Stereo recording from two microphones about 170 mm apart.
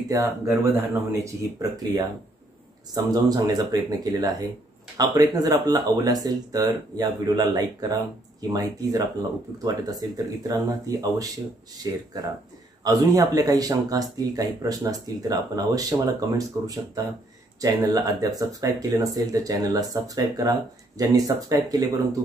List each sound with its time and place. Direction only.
0.1 s speech: 20° right (ahead or behind)